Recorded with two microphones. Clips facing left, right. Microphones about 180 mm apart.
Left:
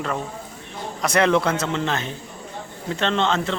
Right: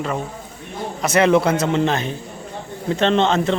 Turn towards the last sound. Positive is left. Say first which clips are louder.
# right 5 dB
turn(degrees=-20)  # may be behind; listen again after turning